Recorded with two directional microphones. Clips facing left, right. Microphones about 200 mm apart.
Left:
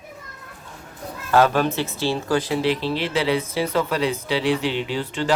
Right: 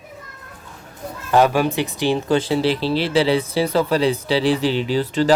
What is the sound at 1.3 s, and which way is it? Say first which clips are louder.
Speech: right 2 dB; 15° right (ahead or behind).